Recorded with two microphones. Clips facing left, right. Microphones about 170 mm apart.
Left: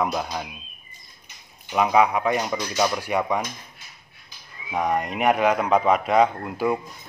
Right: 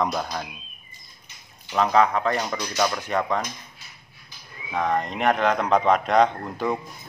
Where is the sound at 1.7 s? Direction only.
10° left (ahead or behind).